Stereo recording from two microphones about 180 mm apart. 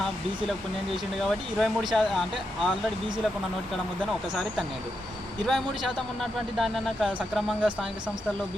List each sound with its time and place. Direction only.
0.0 s speech: centre (ahead or behind)
5.5 s speech: centre (ahead or behind)